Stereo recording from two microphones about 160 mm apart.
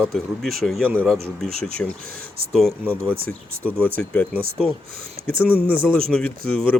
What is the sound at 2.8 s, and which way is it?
Speech, 10° right (ahead or behind).